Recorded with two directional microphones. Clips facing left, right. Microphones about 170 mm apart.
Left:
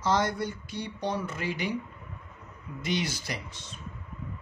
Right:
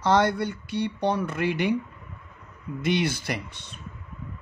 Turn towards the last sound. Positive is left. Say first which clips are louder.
# right 6 dB
turn(degrees=-60)  # may be behind; listen again after turning